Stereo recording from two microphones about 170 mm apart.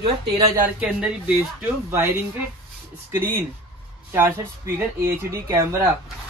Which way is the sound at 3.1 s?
15° right (ahead or behind).